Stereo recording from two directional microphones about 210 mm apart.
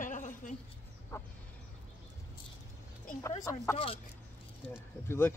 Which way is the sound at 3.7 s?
25° left (ahead or behind).